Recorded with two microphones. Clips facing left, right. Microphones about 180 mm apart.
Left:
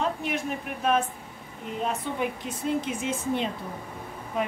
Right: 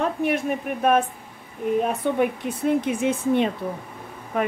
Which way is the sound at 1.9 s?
60° right (ahead or behind).